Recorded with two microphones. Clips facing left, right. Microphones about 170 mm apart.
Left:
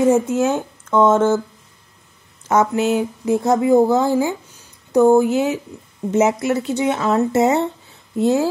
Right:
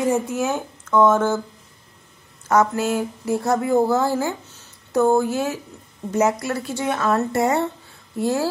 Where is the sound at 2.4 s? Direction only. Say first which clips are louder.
Left 2 dB; 20° left (ahead or behind).